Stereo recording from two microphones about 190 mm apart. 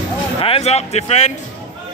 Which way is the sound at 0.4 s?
30° left (ahead or behind).